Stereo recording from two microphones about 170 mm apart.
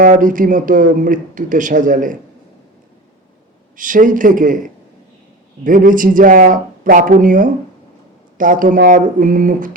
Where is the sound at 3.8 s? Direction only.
50° right (ahead or behind).